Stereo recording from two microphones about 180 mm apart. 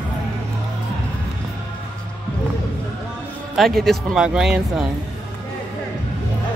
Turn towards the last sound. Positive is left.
turn(degrees=-5)  # may be behind; listen again after turning